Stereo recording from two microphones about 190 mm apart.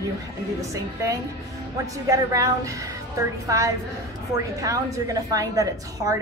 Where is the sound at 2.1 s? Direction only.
15° right (ahead or behind).